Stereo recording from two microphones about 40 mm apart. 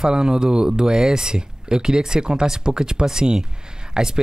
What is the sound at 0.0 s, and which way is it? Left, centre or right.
Speech, centre.